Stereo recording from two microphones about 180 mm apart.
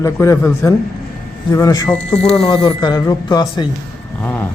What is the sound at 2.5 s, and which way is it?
Speech, 25° left (ahead or behind).